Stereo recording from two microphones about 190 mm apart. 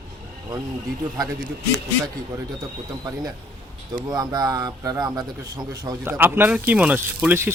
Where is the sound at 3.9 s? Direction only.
20° right (ahead or behind).